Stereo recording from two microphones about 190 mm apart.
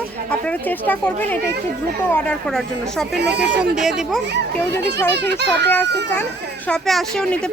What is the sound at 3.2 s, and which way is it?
Speech, 60° right (ahead or behind).